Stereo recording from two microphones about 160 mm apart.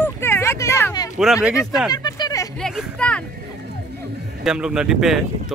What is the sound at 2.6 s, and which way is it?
Speech, centre (ahead or behind).